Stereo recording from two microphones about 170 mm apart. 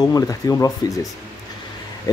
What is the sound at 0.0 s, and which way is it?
Speech, 20° left (ahead or behind).